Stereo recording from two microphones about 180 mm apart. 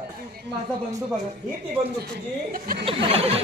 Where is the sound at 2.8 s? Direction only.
30° right (ahead or behind).